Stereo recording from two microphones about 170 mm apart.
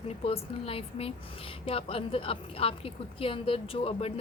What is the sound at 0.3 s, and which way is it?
A woman's voice, 35° left (ahead or behind).